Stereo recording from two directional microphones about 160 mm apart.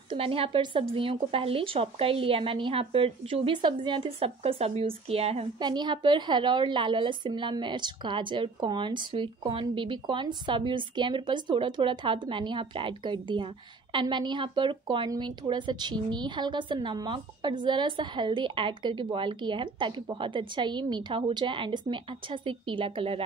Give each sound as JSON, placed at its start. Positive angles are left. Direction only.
{"t": 0.1, "sound": "speech", "side_deg": -35}
{"t": 5.6, "sound": "speech", "side_deg": -30}